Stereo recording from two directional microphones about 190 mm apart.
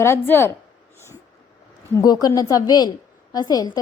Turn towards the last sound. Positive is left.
turn(degrees=20)  # may be behind; listen again after turning